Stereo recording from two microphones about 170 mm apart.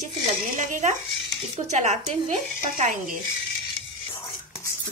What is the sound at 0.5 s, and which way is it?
Speech, 50° right (ahead or behind).